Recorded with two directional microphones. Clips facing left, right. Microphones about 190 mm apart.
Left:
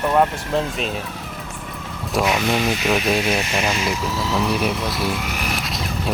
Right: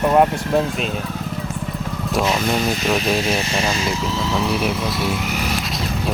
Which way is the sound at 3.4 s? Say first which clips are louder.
Right 1 dB; 30° right (ahead or behind).